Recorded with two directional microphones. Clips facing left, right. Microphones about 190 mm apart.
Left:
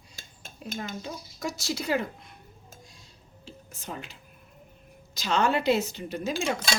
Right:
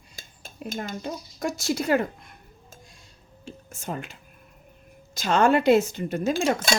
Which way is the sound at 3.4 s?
50° right (ahead or behind).